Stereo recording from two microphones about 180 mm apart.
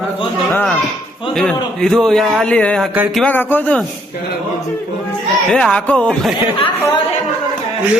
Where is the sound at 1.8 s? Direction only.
Centre (ahead or behind).